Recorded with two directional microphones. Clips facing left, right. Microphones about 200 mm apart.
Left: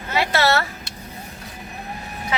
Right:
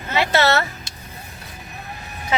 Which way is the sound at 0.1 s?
20° right (ahead or behind).